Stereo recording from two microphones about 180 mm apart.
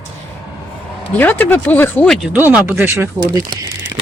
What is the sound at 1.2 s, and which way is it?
Speech, 10° left (ahead or behind).